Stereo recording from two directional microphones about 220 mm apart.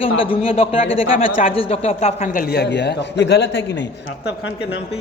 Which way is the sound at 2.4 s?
50° left (ahead or behind).